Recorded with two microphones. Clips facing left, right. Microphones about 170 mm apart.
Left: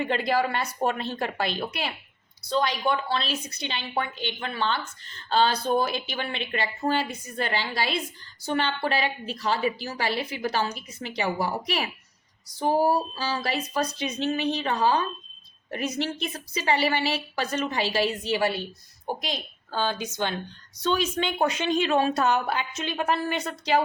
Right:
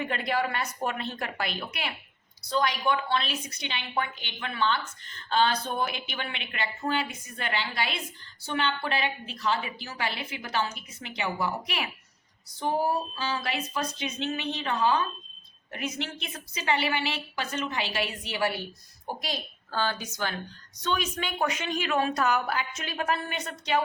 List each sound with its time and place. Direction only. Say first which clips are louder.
0.0 s a woman's voice: left 4 dB; 30° left (ahead or behind)